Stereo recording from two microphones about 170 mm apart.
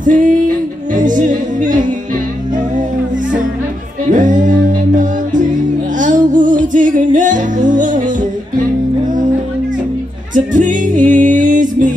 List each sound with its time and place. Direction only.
0.0 s music: 50° right (ahead or behind)
4.1 s music: 50° right (ahead or behind)
10.3 s music: 50° right (ahead or behind)